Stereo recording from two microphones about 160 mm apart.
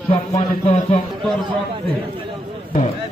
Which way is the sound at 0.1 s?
40° left (ahead or behind).